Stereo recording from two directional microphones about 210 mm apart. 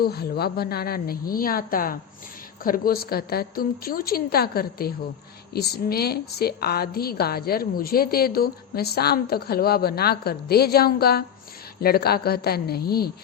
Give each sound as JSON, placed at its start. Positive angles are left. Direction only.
{"t": 0.0, "sound": "a woman's voice", "side_deg": 50}